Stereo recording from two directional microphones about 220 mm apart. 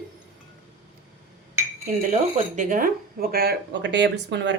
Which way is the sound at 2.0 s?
35° right (ahead or behind).